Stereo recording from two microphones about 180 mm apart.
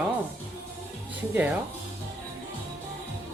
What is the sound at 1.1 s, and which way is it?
Speech, 10° right (ahead or behind).